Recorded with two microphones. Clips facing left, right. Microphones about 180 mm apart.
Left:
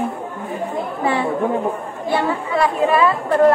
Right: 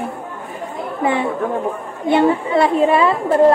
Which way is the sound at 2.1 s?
25° right (ahead or behind).